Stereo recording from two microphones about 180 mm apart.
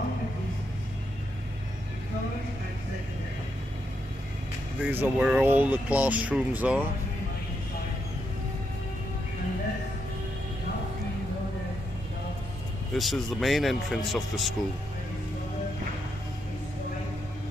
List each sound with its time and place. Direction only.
4.8 s speech: 10° right (ahead or behind)
12.9 s speech: centre (ahead or behind)